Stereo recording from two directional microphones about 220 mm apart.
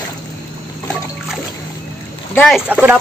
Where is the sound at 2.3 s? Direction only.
5° left (ahead or behind).